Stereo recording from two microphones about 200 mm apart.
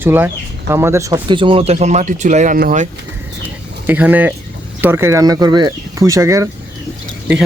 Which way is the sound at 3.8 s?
10° right (ahead or behind).